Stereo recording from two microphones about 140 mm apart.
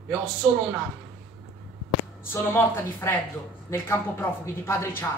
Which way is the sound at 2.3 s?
15° left (ahead or behind).